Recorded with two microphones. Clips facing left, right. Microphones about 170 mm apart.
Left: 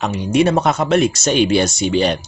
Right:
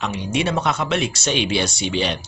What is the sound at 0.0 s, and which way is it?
A man's voice, 45° left (ahead or behind).